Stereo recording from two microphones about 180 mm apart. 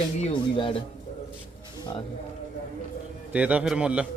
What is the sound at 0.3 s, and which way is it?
Speech, 25° left (ahead or behind).